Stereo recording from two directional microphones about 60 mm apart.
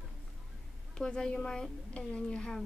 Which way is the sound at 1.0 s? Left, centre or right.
Centre.